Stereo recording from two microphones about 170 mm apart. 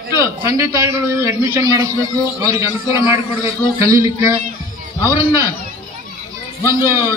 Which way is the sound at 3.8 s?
20° right (ahead or behind).